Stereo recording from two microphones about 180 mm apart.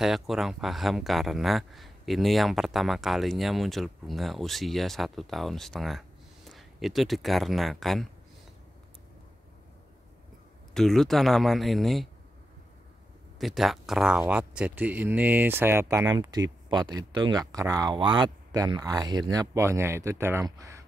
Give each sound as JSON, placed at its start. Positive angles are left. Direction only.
{"t": 0.0, "sound": "speech", "side_deg": 0}
{"t": 10.7, "sound": "speech", "side_deg": 0}
{"t": 13.4, "sound": "speech", "side_deg": 0}